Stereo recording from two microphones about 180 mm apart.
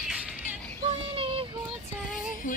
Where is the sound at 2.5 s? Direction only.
45° left (ahead or behind).